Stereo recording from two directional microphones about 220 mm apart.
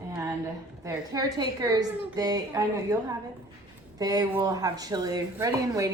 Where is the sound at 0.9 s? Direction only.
15° right (ahead or behind).